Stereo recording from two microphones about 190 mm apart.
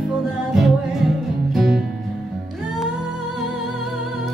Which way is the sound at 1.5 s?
Centre (ahead or behind).